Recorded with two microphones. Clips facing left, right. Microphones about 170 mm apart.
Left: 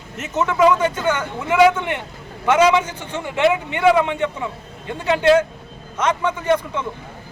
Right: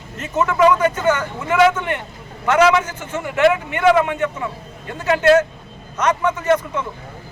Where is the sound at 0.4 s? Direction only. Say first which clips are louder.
Right 1 dB; 10° left (ahead or behind).